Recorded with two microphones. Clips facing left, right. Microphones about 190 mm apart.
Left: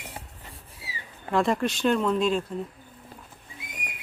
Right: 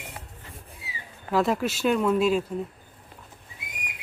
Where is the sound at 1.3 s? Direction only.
5° right (ahead or behind).